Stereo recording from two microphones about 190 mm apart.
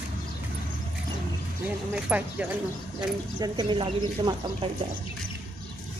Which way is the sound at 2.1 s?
5° right (ahead or behind).